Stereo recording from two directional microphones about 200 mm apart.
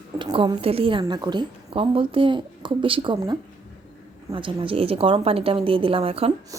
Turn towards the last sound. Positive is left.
turn(degrees=-30)  # may be behind; listen again after turning